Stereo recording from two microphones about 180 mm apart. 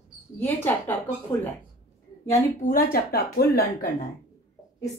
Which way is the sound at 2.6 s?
55° left (ahead or behind).